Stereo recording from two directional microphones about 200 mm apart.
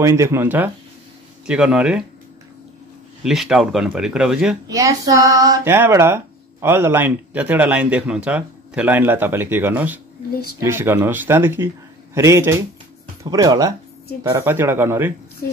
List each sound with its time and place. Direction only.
0.0 s speech: 15° right (ahead or behind)
3.3 s speech: 5° right (ahead or behind)
4.6 s speech: 15° right (ahead or behind)